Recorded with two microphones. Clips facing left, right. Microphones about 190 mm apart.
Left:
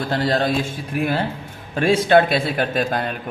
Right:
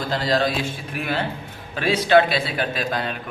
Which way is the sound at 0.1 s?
55° left (ahead or behind).